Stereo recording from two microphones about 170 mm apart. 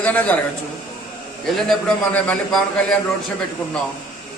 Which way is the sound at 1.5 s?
Centre (ahead or behind).